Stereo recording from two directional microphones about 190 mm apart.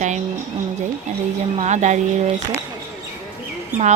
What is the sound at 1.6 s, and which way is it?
Speech, 40° right (ahead or behind).